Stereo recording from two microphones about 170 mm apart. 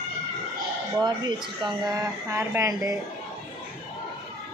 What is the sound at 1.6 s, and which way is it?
Speech, 20° right (ahead or behind).